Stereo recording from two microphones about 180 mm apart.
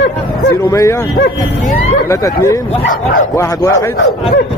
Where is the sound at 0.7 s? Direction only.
15° left (ahead or behind).